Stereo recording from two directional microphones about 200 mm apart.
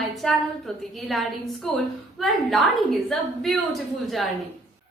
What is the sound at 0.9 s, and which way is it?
A woman's voice, centre (ahead or behind).